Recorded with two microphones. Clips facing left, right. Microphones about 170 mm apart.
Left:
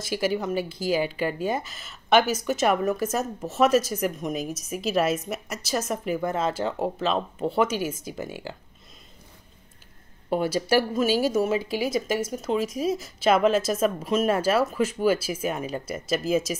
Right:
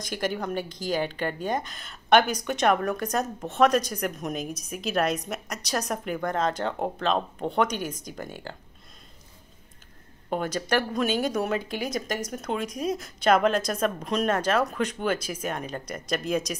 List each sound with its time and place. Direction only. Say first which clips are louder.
0.0 s a woman's voice: left 3 dB; 5° left (ahead or behind)
10.3 s a woman's voice: left 4 dB; 10° left (ahead or behind)